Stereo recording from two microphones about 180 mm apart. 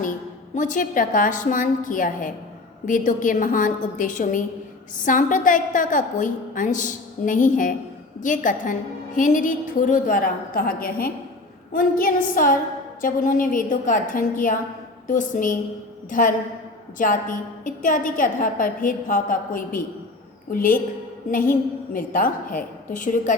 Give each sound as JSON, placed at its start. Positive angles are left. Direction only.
{"t": 0.5, "sound": "a woman's voice", "side_deg": 45}